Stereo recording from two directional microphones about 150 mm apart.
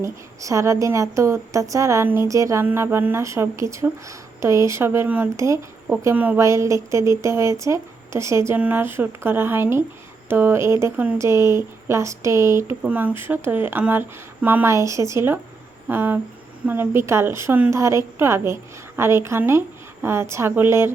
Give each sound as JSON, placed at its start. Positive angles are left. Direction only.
{"t": 0.0, "sound": "a woman's voice", "side_deg": -20}